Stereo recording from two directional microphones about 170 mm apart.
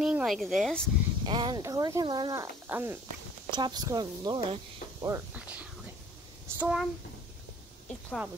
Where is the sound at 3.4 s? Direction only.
25° right (ahead or behind).